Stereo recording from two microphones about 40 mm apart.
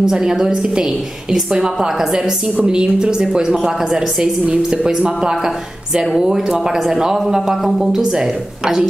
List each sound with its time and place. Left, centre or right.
0.0 s a woman's voice: centre